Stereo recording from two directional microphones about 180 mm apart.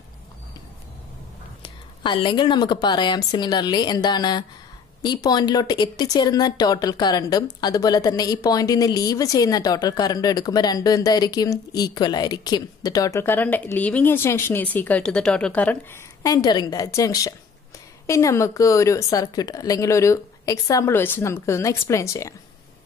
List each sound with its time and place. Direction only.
1.6 s a woman's voice: 30° left (ahead or behind)